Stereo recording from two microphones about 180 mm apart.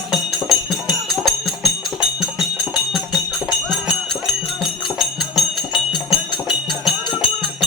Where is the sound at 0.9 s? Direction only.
Centre (ahead or behind).